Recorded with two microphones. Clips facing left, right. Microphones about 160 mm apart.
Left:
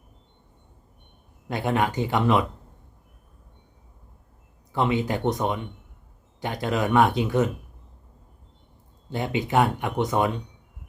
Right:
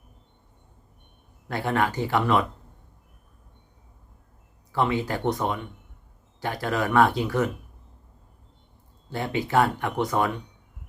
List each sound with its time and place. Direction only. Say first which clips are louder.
1.5 s speech: left 1 dB; 20° left (ahead or behind)
4.7 s speech: left 1 dB; 20° left (ahead or behind)
9.0 s speech: left 1 dB; 20° left (ahead or behind)